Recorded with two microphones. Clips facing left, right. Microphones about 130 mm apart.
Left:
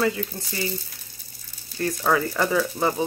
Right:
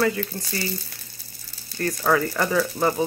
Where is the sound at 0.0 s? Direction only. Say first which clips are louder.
Right 1 dB; 20° left (ahead or behind).